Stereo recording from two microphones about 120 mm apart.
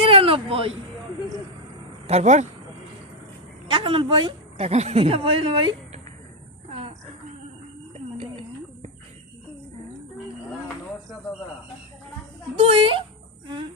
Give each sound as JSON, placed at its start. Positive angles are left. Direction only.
{"t": 0.0, "sound": "a sound", "side_deg": -50}
{"t": 2.0, "sound": "speech", "side_deg": -70}
{"t": 3.7, "sound": "speech", "side_deg": -45}
{"t": 4.5, "sound": "speech", "side_deg": -60}
{"t": 12.6, "sound": "speech", "side_deg": -50}